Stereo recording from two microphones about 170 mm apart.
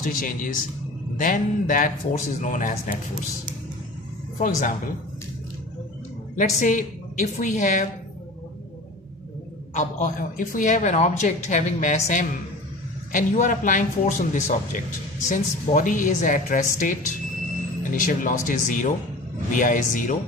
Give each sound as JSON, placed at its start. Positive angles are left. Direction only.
{"t": 0.0, "sound": "a woman's voice", "side_deg": 55}
{"t": 4.4, "sound": "a woman's voice", "side_deg": 50}
{"t": 6.3, "sound": "a woman's voice", "side_deg": 50}
{"t": 9.8, "sound": "a woman's voice", "side_deg": 50}
{"t": 17.9, "sound": "a woman's voice", "side_deg": 50}